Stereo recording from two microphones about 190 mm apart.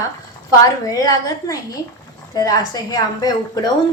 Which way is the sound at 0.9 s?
20° left (ahead or behind).